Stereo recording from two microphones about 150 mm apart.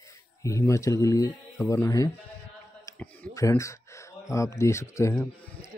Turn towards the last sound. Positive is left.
turn(degrees=20)  # may be behind; listen again after turning